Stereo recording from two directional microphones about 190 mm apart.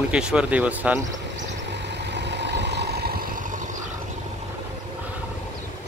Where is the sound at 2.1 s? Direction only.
65° right (ahead or behind).